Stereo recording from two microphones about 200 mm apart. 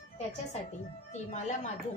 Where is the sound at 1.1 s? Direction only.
35° left (ahead or behind).